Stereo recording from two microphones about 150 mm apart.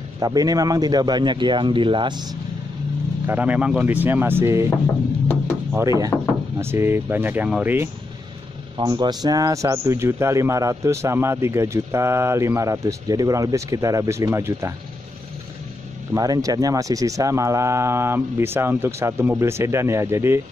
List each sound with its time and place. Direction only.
0.2 s a man's voice: 25° right (ahead or behind)
3.3 s speech: 10° right (ahead or behind)
6.1 s knock: 15° left (ahead or behind)
6.6 s speech: 15° right (ahead or behind)
8.7 s a man's voice: 30° right (ahead or behind)
16.1 s speech: 25° right (ahead or behind)